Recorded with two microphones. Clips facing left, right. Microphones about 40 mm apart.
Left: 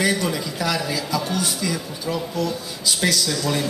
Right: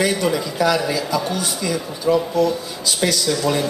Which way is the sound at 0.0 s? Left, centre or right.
Centre.